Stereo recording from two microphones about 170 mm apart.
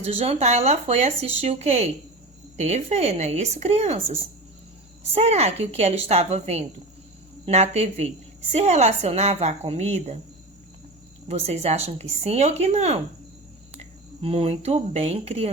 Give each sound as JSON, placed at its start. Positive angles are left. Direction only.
{"t": 0.0, "sound": "speech", "side_deg": -40}
{"t": 11.3, "sound": "speech", "side_deg": -40}